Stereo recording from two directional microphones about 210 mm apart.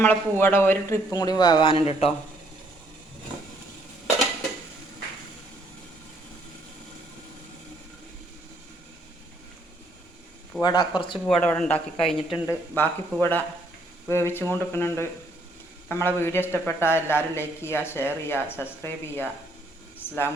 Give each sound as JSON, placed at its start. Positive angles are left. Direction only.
{"t": 0.0, "sound": "a man's voice", "side_deg": 10}
{"t": 10.6, "sound": "speech", "side_deg": 20}
{"t": 11.3, "sound": "a man's voice", "side_deg": 5}